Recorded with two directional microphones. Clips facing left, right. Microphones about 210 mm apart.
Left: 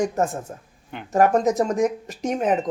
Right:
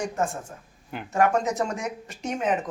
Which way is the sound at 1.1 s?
40° left (ahead or behind).